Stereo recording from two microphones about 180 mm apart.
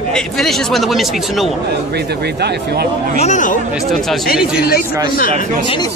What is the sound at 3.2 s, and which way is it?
Speech, 45° left (ahead or behind).